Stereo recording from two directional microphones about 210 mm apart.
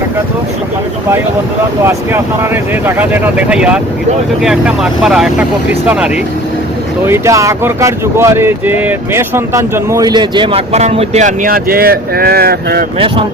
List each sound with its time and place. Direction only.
1.8 s speech: 10° right (ahead or behind)
7.1 s speech: 15° right (ahead or behind); by 12.8 s 45° right (ahead or behind)